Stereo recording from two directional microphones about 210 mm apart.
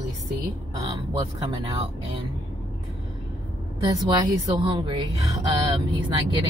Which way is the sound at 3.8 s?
15° right (ahead or behind).